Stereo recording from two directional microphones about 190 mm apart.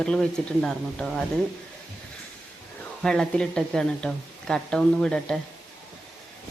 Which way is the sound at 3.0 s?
5° left (ahead or behind).